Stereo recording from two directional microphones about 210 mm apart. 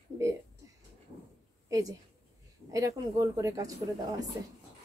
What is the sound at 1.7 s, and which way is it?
A woman's voice, 15° right (ahead or behind).